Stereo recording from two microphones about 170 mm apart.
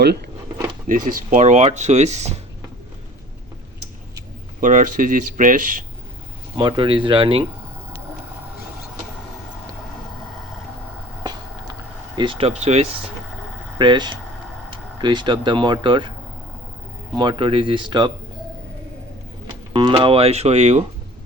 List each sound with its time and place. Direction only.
1.1 s speech: 50° right (ahead or behind)
4.6 s speech: 50° right (ahead or behind)
6.6 s speech: 30° right (ahead or behind)
11.2 s vehicle: 25° right (ahead or behind)
13.7 s speech: 25° right (ahead or behind)
17.2 s speech: 30° right (ahead or behind)
19.7 s speech: 30° right (ahead or behind)